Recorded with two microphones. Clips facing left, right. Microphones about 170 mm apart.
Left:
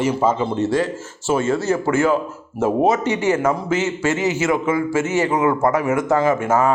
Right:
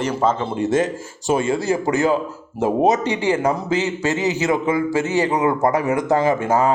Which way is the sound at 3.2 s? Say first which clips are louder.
Left 1 dB; 30° right (ahead or behind).